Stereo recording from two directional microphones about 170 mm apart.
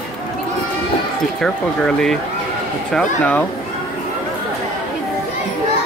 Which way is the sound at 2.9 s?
5° left (ahead or behind).